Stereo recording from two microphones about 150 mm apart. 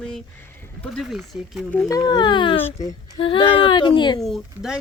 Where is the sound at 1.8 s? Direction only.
25° left (ahead or behind).